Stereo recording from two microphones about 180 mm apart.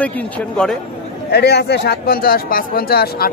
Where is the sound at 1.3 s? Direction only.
65° left (ahead or behind).